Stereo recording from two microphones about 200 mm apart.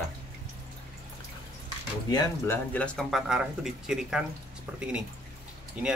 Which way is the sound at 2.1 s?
15° left (ahead or behind).